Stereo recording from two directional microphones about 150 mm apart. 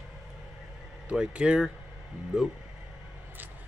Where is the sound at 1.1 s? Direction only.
5° right (ahead or behind).